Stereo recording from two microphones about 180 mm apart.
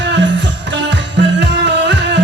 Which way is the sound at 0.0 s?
80° right.